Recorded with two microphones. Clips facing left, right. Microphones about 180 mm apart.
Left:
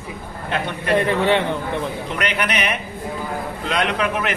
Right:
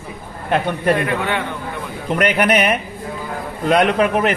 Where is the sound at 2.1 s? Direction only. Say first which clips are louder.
Right 10 dB; 50° right (ahead or behind).